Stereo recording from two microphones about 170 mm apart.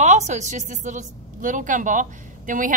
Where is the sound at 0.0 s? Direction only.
45° right (ahead or behind).